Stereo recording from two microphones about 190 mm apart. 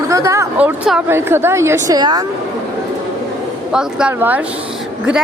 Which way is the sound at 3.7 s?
5° right (ahead or behind).